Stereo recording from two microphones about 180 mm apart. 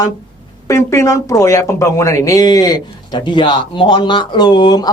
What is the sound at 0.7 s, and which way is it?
Speech, 15° left (ahead or behind).